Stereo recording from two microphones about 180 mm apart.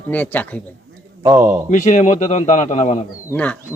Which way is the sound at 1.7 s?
40° left (ahead or behind).